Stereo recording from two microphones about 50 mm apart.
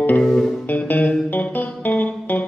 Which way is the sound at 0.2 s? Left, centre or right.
Centre.